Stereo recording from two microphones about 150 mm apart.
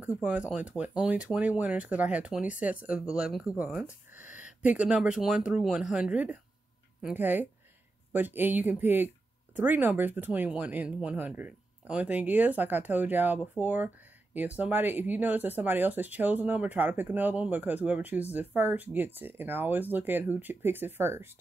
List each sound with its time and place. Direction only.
0.0 s speech: 10° right (ahead or behind)